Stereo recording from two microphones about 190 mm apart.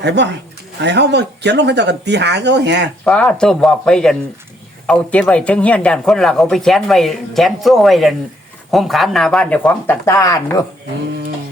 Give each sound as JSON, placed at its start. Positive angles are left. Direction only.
{"t": 0.0, "sound": "speech", "side_deg": -65}
{"t": 3.0, "sound": "speech", "side_deg": 5}